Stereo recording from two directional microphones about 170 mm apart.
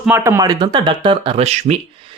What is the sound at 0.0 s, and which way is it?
Speech, 15° right (ahead or behind).